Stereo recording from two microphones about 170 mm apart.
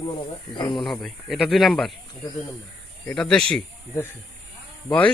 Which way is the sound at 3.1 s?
5° left (ahead or behind).